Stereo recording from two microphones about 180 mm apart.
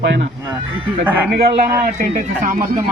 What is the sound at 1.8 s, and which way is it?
Speech, 50° right (ahead or behind).